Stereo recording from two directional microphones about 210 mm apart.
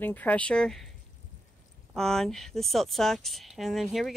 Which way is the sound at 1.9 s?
Centre (ahead or behind).